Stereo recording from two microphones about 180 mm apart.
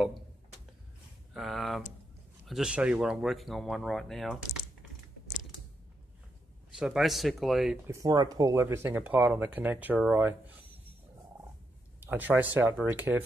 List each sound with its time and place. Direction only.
1.3 s speech: centre (ahead or behind)
6.8 s speech: centre (ahead or behind)
7.8 s speech: 15° right (ahead or behind)
12.0 s speech: 10° right (ahead or behind)